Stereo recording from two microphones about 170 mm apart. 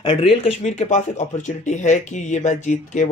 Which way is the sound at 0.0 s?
35° left (ahead or behind).